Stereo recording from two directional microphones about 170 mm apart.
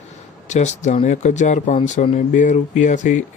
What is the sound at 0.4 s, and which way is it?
Speech, 40° left (ahead or behind).